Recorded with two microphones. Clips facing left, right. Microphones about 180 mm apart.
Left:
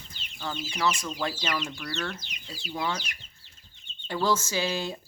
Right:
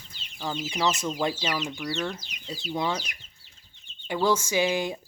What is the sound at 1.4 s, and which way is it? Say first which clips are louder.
Speech: right 2 dB; 10° right (ahead or behind).